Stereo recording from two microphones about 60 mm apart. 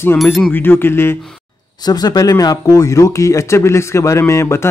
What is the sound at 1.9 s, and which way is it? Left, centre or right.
A man's voice, left.